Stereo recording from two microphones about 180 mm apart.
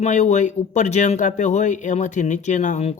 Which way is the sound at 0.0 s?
40° left (ahead or behind).